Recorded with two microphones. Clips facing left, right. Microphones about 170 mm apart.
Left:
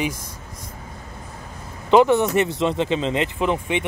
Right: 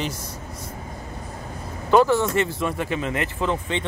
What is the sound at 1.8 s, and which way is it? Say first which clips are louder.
Speech: left 2 dB; 20° left (ahead or behind).